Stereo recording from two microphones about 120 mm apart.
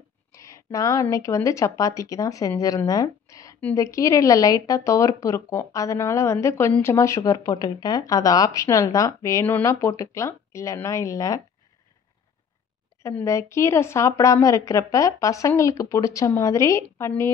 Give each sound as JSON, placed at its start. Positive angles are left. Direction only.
{"t": 0.3, "sound": "a sound", "side_deg": 25}
{"t": 1.1, "sound": "speech", "side_deg": 25}
{"t": 13.2, "sound": "speech", "side_deg": 25}